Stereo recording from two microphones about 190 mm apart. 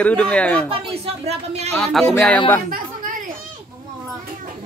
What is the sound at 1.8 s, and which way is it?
Speech, centre (ahead or behind).